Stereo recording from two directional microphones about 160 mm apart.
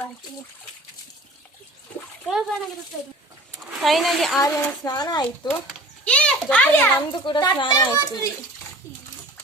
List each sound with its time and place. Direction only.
2.2 s a child's voice: centre (ahead or behind)
3.6 s speech: 5° right (ahead or behind)
4.4 s a child's voice: 20° left (ahead or behind)
6.1 s a child's voice: 10° left (ahead or behind)
7.1 s a child's voice: 30° left (ahead or behind)